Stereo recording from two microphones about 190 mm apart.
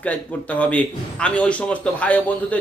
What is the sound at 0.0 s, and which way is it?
A man's voice, 10° left (ahead or behind).